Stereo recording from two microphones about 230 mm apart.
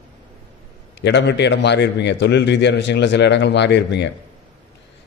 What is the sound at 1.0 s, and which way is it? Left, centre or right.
A man's voice, left.